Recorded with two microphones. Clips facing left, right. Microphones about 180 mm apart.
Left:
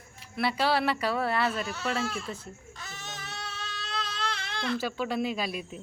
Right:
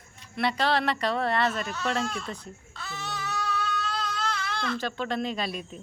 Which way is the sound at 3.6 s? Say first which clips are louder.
Right 6 dB; 50° right (ahead or behind).